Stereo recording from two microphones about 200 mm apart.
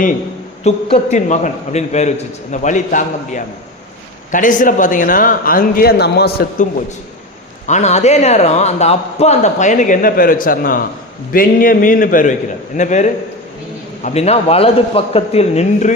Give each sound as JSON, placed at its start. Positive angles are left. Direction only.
{"t": 0.6, "sound": "a man's voice", "side_deg": 30}
{"t": 7.7, "sound": "a man's voice", "side_deg": 35}